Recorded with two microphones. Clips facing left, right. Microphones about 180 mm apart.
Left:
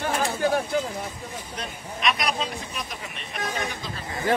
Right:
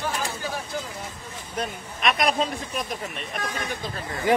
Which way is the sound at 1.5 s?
50° right (ahead or behind).